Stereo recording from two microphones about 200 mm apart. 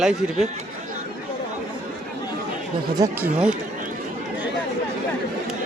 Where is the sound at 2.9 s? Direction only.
15° right (ahead or behind).